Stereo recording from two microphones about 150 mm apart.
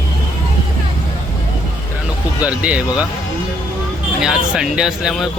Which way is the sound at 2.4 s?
10° right (ahead or behind).